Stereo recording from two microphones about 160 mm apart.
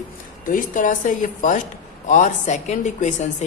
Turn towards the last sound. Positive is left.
turn(degrees=50)  # may be behind; listen again after turning